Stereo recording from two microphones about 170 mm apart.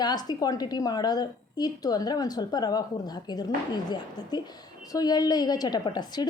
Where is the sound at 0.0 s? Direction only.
25° left (ahead or behind).